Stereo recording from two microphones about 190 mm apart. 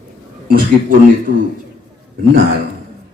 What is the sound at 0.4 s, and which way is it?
Speech, 45° right (ahead or behind).